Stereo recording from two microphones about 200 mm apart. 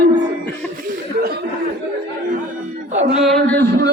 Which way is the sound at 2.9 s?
35° right (ahead or behind).